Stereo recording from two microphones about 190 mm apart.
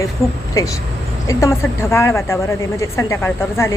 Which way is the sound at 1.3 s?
15° left (ahead or behind).